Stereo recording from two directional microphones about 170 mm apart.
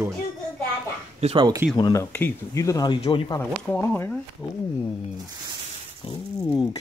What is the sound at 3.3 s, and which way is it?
Speech, 15° left (ahead or behind).